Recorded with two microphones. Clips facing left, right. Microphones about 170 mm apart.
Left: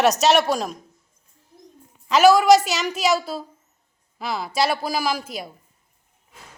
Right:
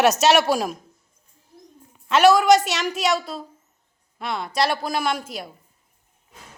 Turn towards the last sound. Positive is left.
turn(degrees=0)  # may be behind; listen again after turning